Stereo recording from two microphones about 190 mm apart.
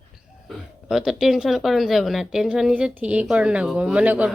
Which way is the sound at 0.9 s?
Centre (ahead or behind).